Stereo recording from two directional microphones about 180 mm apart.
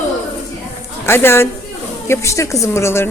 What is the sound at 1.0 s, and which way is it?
Speech, 15° left (ahead or behind).